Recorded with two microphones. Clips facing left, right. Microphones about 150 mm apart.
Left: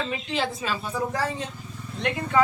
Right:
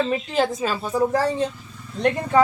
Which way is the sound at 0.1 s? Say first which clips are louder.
Right 6 dB; 45° right (ahead or behind).